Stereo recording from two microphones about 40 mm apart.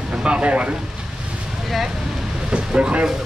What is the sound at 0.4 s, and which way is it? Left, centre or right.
Speech, right.